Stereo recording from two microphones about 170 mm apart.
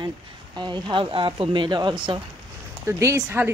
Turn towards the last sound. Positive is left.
turn(degrees=-15)  # may be behind; listen again after turning